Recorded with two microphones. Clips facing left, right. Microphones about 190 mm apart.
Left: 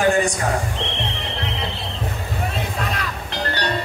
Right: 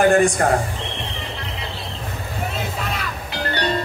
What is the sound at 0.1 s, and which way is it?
Speech, 55° right (ahead or behind).